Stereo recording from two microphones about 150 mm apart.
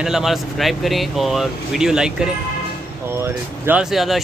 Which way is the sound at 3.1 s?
15° right (ahead or behind).